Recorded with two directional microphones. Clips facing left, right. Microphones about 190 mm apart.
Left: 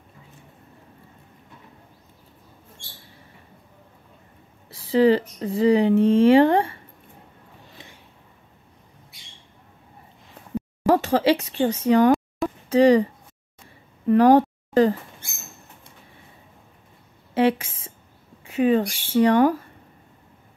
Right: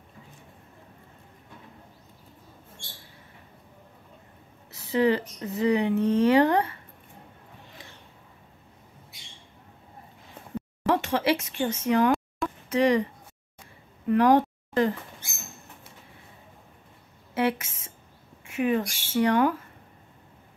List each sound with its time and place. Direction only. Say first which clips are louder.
4.6 s speech: left 6 dB; 30° left (ahead or behind)
10.9 s speech: left 6 dB; 35° left (ahead or behind)
14.0 s speech: left 5 dB; 35° left (ahead or behind)
17.3 s speech: left 6 dB; 30° left (ahead or behind)